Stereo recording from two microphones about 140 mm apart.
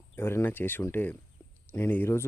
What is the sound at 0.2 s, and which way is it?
Speech, 15° left (ahead or behind).